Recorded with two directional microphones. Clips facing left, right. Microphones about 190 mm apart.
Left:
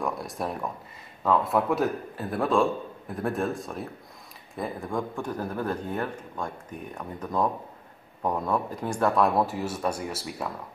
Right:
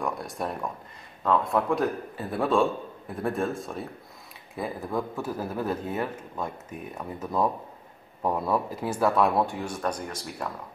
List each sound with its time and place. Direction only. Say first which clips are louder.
0.0 s a man's voice: even; centre (ahead or behind)